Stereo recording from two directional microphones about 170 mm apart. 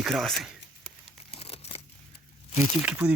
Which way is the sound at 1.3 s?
35° left (ahead or behind).